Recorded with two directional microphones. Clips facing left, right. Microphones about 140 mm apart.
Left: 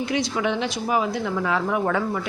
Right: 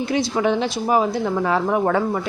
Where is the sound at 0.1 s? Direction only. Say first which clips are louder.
Right 6 dB; 35° right (ahead or behind).